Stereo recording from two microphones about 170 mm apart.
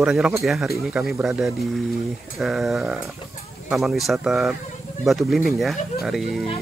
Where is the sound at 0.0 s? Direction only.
5° right (ahead or behind).